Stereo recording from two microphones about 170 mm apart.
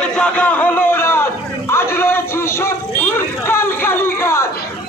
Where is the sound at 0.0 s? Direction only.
5° left (ahead or behind).